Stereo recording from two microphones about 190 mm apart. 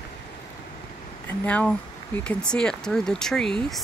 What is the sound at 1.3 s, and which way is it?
Speech, 5° left (ahead or behind).